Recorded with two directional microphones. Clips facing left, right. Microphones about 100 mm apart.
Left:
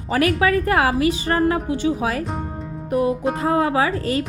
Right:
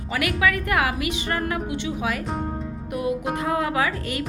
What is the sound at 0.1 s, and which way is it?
A woman's voice, 35° left (ahead or behind).